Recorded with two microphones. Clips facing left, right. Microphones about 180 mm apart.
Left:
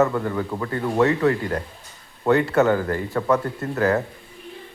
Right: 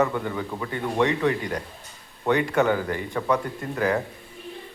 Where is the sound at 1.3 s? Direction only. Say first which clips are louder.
Left 4 dB; 55° left (ahead or behind).